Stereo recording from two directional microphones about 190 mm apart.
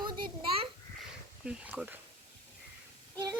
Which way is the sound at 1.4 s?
5° right (ahead or behind).